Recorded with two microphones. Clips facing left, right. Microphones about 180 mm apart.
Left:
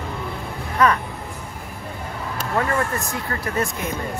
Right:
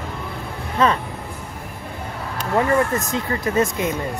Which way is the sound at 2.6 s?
20° right (ahead or behind).